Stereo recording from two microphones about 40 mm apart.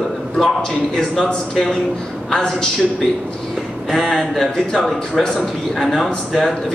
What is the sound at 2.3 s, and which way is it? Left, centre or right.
Speech, centre.